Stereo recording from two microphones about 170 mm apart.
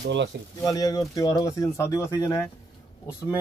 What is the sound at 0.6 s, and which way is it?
Speech, 20° left (ahead or behind).